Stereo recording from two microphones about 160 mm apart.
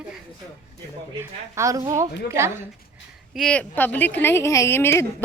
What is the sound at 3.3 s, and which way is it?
Speech, 5° left (ahead or behind).